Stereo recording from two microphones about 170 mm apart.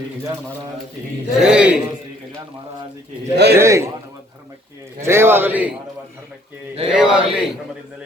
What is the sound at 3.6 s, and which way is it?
Speech, 15° right (ahead or behind).